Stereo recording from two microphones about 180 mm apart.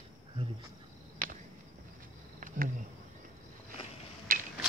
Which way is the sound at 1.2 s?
50° right (ahead or behind).